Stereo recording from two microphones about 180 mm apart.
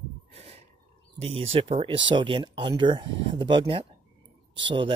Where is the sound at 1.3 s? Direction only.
30° right (ahead or behind).